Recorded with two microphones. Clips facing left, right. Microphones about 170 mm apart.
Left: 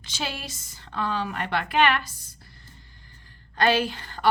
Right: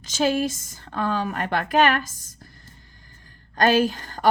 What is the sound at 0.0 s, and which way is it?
A woman's voice, 45° right (ahead or behind).